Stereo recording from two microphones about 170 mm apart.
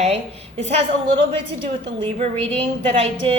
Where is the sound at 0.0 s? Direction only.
35° right (ahead or behind).